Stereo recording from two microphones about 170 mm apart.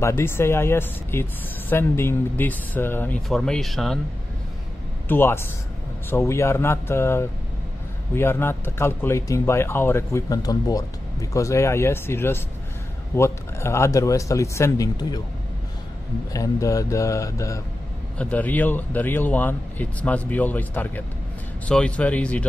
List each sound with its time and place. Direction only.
0.0 s speech: 15° left (ahead or behind)
3.2 s speech: centre (ahead or behind)
5.0 s speech: 15° left (ahead or behind)
16.3 s speech: 20° left (ahead or behind)